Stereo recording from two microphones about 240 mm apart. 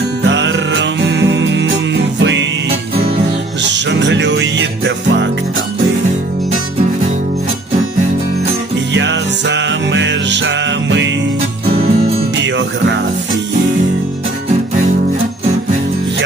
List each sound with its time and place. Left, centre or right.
0.3 s music: right
3.8 s music: right
8.9 s music: right
11.7 s music: right